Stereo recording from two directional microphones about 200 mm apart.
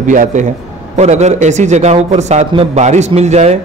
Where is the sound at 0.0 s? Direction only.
40° right (ahead or behind).